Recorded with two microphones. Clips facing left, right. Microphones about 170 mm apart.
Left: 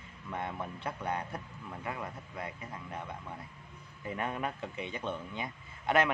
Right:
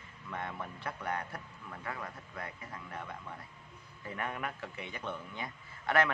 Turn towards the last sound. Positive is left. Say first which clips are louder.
# left 2 dB
turn(degrees=20)  # may be behind; listen again after turning